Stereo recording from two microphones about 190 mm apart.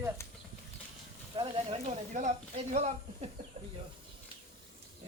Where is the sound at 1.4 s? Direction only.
30° right (ahead or behind).